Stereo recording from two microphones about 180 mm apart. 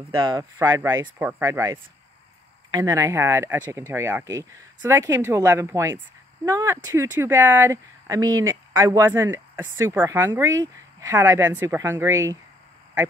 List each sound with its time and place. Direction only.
0.1 s speech: 25° right (ahead or behind)